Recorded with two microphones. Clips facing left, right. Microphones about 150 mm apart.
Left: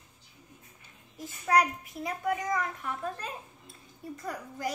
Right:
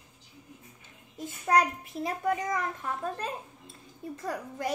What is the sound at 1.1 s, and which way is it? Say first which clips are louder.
Speech: right 1 dB; 25° right (ahead or behind).